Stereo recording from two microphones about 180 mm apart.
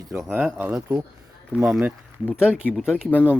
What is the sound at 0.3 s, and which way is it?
Speech, 10° right (ahead or behind).